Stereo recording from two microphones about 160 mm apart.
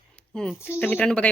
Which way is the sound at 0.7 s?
10° left (ahead or behind).